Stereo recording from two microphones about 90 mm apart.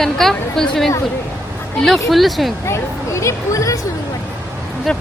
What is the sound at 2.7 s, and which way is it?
Speech, 30° left (ahead or behind).